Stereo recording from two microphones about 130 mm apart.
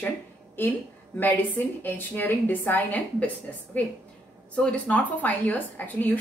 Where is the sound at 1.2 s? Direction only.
15° left (ahead or behind).